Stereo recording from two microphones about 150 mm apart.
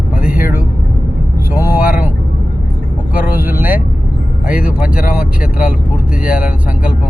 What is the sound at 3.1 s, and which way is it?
Vehicle, 10° right (ahead or behind).